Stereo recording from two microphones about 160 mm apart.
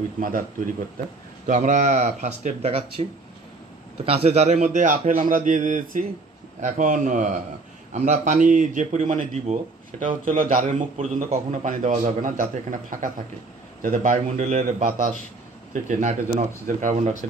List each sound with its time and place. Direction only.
0.9 s a man's voice: 50° right (ahead or behind)
10.2 s a man's voice: 55° right (ahead or behind)